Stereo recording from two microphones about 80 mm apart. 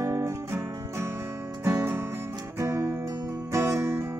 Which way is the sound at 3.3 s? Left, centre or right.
Right.